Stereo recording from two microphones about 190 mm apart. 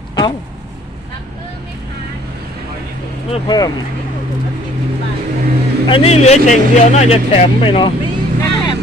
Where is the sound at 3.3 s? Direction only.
20° left (ahead or behind).